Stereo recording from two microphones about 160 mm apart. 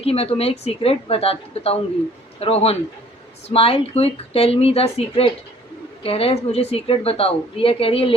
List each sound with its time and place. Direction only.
0.0 s a woman's voice: 40° left (ahead or behind)